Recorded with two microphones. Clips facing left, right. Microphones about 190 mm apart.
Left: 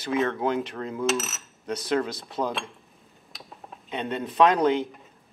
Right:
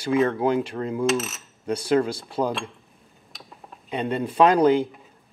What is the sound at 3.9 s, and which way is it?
Speech, centre (ahead or behind).